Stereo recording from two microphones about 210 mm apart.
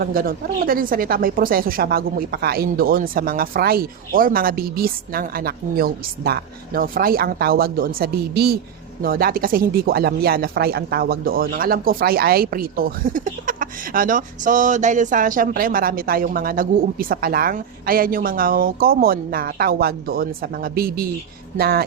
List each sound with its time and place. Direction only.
0.0 s speech: 45° right (ahead or behind)